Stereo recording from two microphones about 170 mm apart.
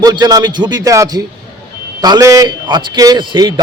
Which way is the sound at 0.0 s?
20° right (ahead or behind).